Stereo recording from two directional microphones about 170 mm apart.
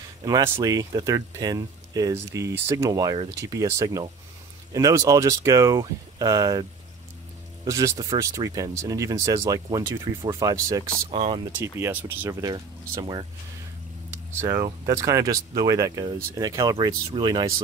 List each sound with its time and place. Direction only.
0.2 s speech: 20° right (ahead or behind)
7.6 s speech: 20° right (ahead or behind)
11.1 s speech: 30° right (ahead or behind)
11.5 s speech: 15° right (ahead or behind)
14.4 s speech: 15° right (ahead or behind)